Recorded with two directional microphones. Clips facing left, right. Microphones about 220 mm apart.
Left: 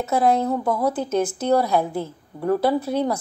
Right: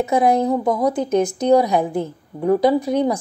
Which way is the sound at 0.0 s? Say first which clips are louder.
Right 3 dB; 15° right (ahead or behind).